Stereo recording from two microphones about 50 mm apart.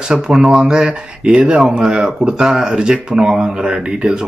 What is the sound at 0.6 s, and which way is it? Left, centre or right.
Speech, centre.